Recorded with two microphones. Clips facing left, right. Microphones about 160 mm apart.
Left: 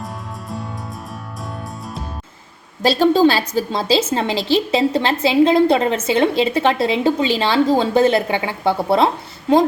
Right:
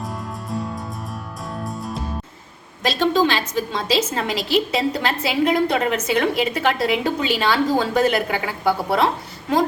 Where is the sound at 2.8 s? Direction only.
35° left (ahead or behind).